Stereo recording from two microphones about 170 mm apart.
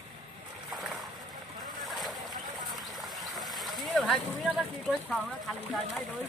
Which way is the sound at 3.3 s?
Centre (ahead or behind).